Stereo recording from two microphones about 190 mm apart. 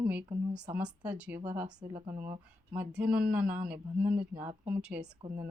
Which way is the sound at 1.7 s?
20° right (ahead or behind).